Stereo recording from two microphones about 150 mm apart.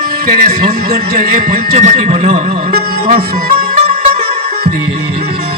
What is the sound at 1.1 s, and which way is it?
Speech, 60° right (ahead or behind).